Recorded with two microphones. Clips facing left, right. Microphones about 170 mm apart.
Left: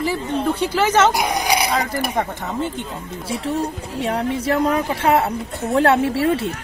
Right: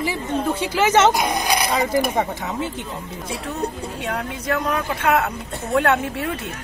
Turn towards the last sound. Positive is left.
turn(degrees=35)  # may be behind; listen again after turning